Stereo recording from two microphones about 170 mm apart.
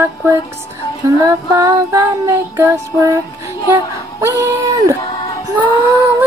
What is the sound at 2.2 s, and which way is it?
Music, 15° right (ahead or behind).